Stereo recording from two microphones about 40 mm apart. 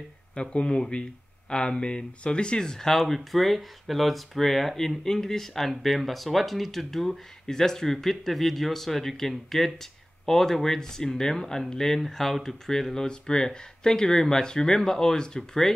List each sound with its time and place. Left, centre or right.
0.4 s speech: left